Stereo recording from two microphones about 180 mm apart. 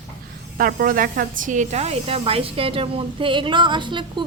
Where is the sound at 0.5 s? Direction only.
55° right (ahead or behind); by 4.2 s 25° right (ahead or behind).